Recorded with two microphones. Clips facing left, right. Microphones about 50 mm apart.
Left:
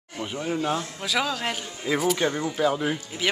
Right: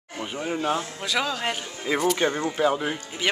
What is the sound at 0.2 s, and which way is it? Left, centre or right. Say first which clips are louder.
Speech: even; centre.